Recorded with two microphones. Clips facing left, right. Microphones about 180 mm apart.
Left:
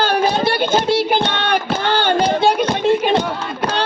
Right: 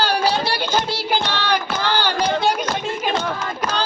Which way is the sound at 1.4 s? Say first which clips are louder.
Left 3 dB; 55° left (ahead or behind).